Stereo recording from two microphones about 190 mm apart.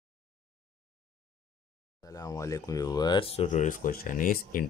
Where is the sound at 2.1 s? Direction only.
15° left (ahead or behind).